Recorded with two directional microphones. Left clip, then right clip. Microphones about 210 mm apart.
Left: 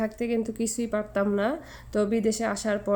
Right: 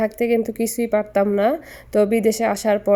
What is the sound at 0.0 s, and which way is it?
A woman's voice, 25° right (ahead or behind).